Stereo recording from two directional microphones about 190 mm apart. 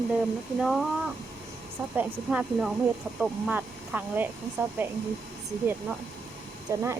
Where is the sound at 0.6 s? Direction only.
Centre (ahead or behind).